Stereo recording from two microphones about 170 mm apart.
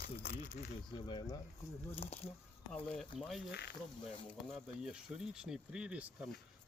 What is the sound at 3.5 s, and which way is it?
Speech, 85° left.